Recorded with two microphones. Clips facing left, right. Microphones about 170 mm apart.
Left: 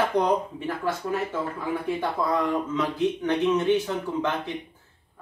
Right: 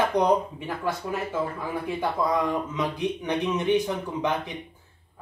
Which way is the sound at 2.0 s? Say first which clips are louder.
Right 4 dB; 15° right (ahead or behind).